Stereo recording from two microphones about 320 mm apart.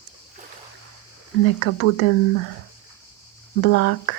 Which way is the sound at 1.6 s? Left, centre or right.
Left.